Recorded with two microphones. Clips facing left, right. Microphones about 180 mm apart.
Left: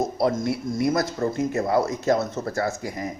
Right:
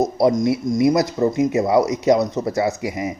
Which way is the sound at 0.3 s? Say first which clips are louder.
Right 7 dB; 20° right (ahead or behind).